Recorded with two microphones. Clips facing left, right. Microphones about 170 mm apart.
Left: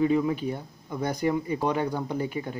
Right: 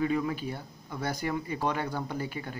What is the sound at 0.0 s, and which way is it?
Speech, 25° left (ahead or behind).